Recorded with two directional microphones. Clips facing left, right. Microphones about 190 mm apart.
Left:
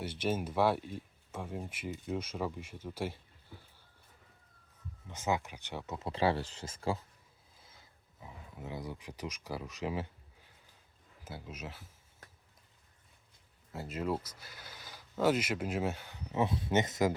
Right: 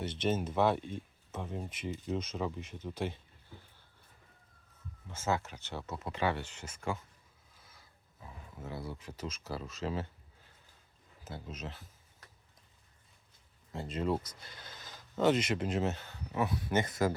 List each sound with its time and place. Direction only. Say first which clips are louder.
0.0 s speech: right 1 dB; 10° left (ahead or behind)
5.0 s speech: even; 15° left (ahead or behind)
6.1 s speech: left 3 dB; 30° left (ahead or behind); by 10.1 s 15° left (ahead or behind)
11.2 s speech: right 1 dB; 10° left (ahead or behind)
13.7 s speech: right 2 dB; 5° left (ahead or behind)